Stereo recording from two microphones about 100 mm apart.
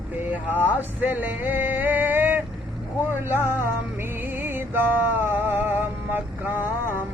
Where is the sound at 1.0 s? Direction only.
15° right (ahead or behind).